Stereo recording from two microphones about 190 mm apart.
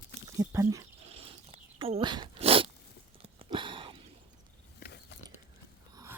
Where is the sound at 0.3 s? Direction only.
15° right (ahead or behind).